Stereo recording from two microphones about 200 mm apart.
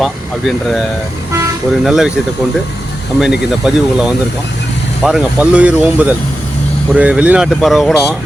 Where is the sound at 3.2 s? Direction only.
5° right (ahead or behind).